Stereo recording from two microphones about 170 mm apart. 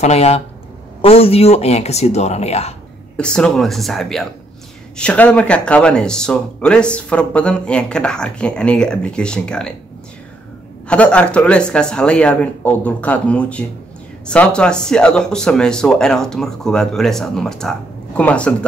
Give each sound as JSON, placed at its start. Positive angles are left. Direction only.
{"t": 0.0, "sound": "speech", "side_deg": 40}
{"t": 3.2, "sound": "speech", "side_deg": 5}
{"t": 10.9, "sound": "speech", "side_deg": 5}